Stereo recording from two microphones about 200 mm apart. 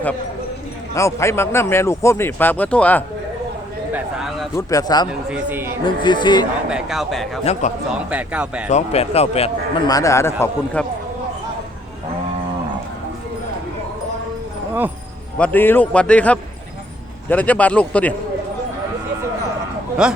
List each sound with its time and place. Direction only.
0.9 s a man's voice: 15° left (ahead or behind); by 4.4 s centre (ahead or behind)
4.5 s speech: 20° left (ahead or behind)
5.3 s a man's voice: 10° right (ahead or behind)
6.0 s speech: 20° left (ahead or behind)
6.7 s speech: 5° right (ahead or behind)
7.5 s speech: 30° left (ahead or behind)
8.1 s speech: 5° right (ahead or behind)
8.7 s speech: 30° left (ahead or behind)
9.8 s a man's voice: 15° left (ahead or behind)
10.8 s a sound: 5° left (ahead or behind)
15.4 s a man's voice: 10° left (ahead or behind)
20.0 s speech: 5° right (ahead or behind)